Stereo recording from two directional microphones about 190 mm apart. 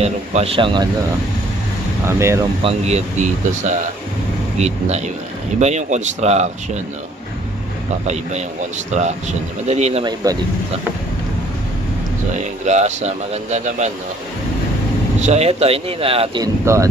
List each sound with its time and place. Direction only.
0.0 s speech: 35° right (ahead or behind)
2.0 s speech: 15° right (ahead or behind)
2.6 s speech: 40° right (ahead or behind)
8.1 s speech: 35° right (ahead or behind)
10.2 s speech: 20° right (ahead or behind)
12.4 s speech: 35° right (ahead or behind)
15.2 s speech: 35° right (ahead or behind)
16.7 s speech: 15° right (ahead or behind)